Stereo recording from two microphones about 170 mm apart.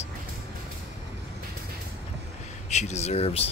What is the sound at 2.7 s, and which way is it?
Speech, 40° left (ahead or behind).